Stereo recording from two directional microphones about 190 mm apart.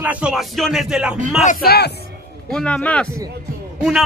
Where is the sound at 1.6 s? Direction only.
55° left (ahead or behind).